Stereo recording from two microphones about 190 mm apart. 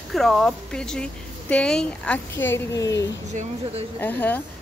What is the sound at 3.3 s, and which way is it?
Speech, 40° right (ahead or behind).